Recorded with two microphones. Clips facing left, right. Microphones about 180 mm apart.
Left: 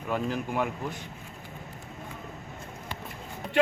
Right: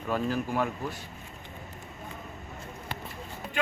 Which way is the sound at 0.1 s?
15° left (ahead or behind).